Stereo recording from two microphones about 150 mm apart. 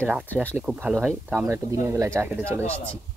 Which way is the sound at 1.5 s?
20° right (ahead or behind).